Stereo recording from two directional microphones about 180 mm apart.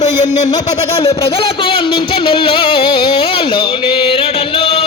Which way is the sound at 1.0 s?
30° left (ahead or behind).